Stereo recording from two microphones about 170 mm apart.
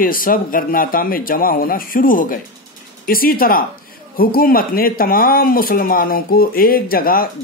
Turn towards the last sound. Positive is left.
turn(degrees=60)  # may be behind; listen again after turning